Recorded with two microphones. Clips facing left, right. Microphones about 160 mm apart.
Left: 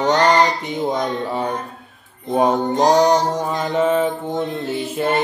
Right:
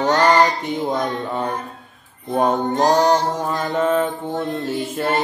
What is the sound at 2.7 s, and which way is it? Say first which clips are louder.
Mantra: left 2 dB; 15° left (ahead or behind).